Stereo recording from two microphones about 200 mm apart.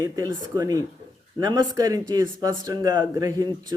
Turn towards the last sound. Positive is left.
turn(degrees=-15)  # may be behind; listen again after turning